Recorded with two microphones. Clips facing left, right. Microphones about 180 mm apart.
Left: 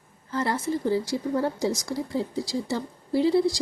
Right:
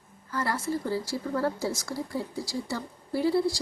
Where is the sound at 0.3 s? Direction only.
20° left (ahead or behind).